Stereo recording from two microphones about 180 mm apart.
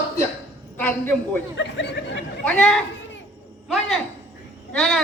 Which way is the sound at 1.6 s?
80° left.